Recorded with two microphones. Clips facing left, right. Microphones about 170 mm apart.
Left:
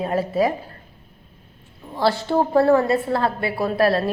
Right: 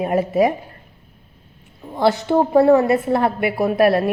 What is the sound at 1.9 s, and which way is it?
A woman's voice, 20° right (ahead or behind).